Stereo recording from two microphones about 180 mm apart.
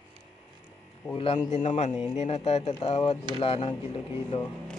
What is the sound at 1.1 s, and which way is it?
Speech, 30° left (ahead or behind).